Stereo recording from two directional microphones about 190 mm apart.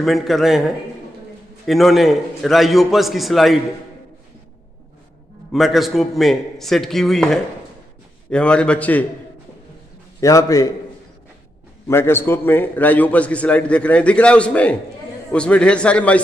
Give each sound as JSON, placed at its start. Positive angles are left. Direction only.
{"t": 0.0, "sound": "a man's voice", "side_deg": 0}
{"t": 1.7, "sound": "a man's voice", "side_deg": 0}
{"t": 5.5, "sound": "a man's voice", "side_deg": 0}
{"t": 10.2, "sound": "a man's voice", "side_deg": 20}
{"t": 11.9, "sound": "a man's voice", "side_deg": 10}